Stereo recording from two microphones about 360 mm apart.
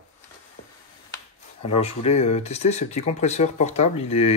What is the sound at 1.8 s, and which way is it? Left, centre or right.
Speech, centre.